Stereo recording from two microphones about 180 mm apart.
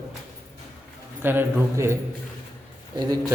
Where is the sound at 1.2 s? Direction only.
10° right (ahead or behind).